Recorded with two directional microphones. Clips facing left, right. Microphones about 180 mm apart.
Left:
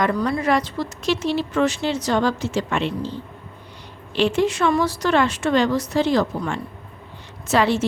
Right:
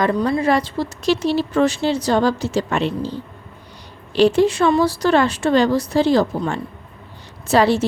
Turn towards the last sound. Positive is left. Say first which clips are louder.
# right 3 dB
turn(degrees=-35)  # may be behind; listen again after turning